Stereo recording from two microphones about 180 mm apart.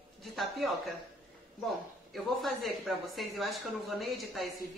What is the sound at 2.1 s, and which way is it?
Speech, centre (ahead or behind).